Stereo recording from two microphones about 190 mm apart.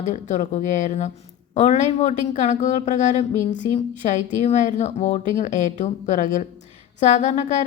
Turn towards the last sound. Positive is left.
turn(degrees=40)  # may be behind; listen again after turning